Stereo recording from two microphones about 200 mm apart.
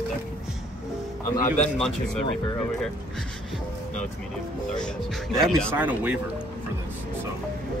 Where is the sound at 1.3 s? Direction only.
40° left (ahead or behind).